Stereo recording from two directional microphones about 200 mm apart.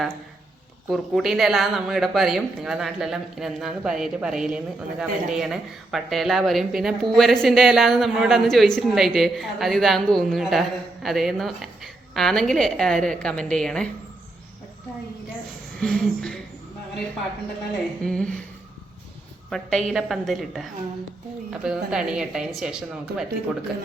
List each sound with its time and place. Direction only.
0.9 s speech: centre (ahead or behind)
15.8 s speech: 5° left (ahead or behind)
18.0 s speech: 5° left (ahead or behind)
19.5 s speech: centre (ahead or behind)